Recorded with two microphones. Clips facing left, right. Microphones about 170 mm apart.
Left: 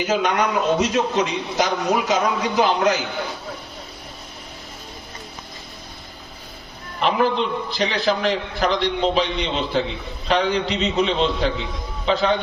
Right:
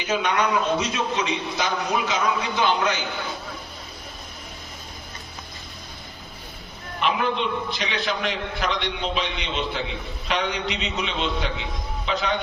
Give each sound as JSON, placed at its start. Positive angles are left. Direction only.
{"t": 0.0, "sound": "a man's voice", "side_deg": 40}
{"t": 7.7, "sound": "a man's voice", "side_deg": 35}